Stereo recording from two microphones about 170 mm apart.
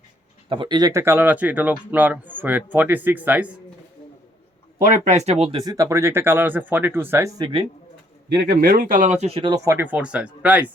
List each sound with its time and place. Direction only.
0.4 s speech: 30° right (ahead or behind); by 3.5 s 10° right (ahead or behind)
4.8 s speech: 40° right (ahead or behind); by 7.6 s 25° right (ahead or behind)
8.3 s speech: 70° right (ahead or behind); by 10.7 s 10° right (ahead or behind)